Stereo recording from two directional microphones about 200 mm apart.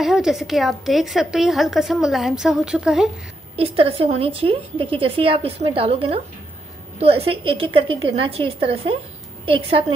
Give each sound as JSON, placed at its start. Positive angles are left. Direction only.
{"t": 0.0, "sound": "a woman's voice", "side_deg": 0}
{"t": 3.5, "sound": "a woman's voice", "side_deg": -30}